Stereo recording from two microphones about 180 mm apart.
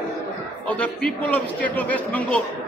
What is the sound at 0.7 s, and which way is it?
A man's voice, 5° left (ahead or behind).